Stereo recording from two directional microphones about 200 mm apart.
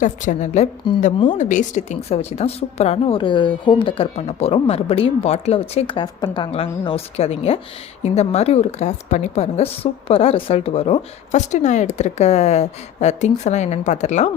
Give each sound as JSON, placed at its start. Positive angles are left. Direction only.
{"t": 0.0, "sound": "a woman's voice", "side_deg": 40}